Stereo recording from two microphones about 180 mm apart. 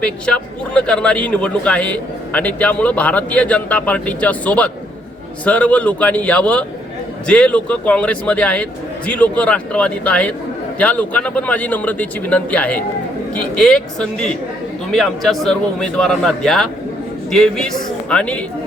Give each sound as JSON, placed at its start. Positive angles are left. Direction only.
{"t": 0.0, "sound": "a man's voice", "side_deg": 5}